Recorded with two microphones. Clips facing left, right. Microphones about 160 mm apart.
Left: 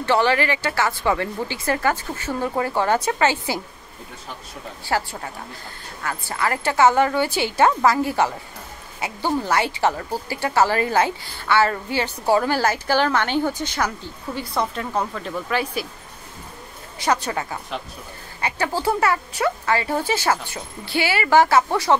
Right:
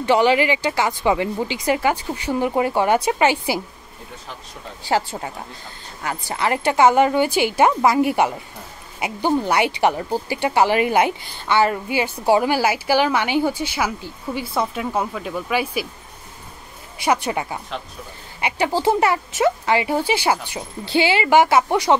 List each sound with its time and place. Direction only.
0.0 s a woman's voice: 15° right (ahead or behind)
4.8 s a woman's voice: 20° right (ahead or behind)
17.0 s a woman's voice: 10° right (ahead or behind)